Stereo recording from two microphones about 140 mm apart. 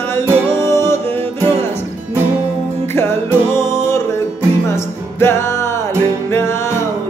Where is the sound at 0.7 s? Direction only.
20° left (ahead or behind).